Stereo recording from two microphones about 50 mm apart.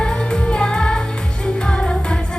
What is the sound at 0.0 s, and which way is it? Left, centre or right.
Music, centre.